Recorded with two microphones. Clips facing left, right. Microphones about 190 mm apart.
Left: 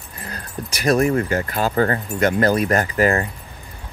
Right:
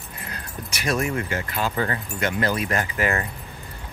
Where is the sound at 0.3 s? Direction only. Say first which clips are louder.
Left 6 dB; 35° left (ahead or behind).